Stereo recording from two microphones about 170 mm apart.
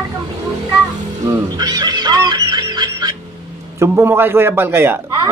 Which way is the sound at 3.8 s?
15° right (ahead or behind).